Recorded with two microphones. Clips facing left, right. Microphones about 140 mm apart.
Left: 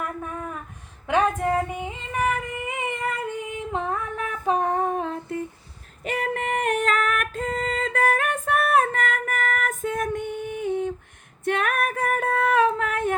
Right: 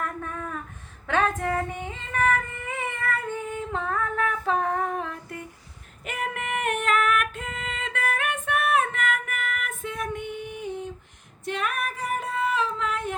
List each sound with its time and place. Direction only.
0.0 s a sound: 10° left (ahead or behind)
1.0 s female singing: 15° left (ahead or behind)
1.5 s child singing: 10° left (ahead or behind); by 5.4 s 25° left (ahead or behind)
6.1 s female singing: 35° left (ahead or behind); by 13.1 s 55° left (ahead or behind)